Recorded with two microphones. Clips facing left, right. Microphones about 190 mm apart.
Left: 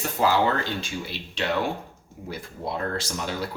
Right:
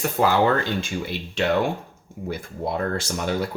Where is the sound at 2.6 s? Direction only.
50° right (ahead or behind).